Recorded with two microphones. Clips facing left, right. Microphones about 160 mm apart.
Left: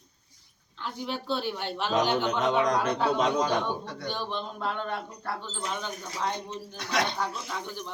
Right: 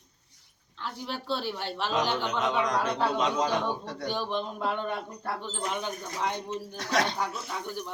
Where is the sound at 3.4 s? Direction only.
35° right (ahead or behind).